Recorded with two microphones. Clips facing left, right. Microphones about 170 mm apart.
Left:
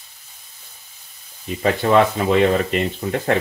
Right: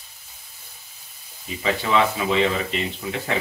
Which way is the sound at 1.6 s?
50° left (ahead or behind).